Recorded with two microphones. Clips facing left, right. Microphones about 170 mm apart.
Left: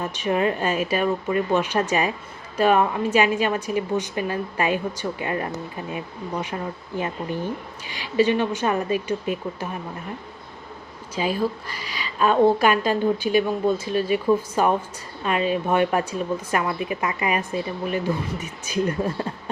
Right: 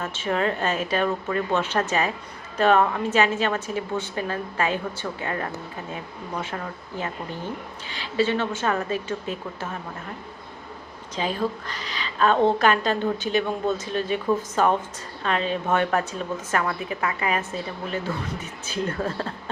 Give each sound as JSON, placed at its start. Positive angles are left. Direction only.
{"t": 0.0, "sound": "a woman's voice", "side_deg": 15}
{"t": 11.1, "sound": "a woman's voice", "side_deg": 10}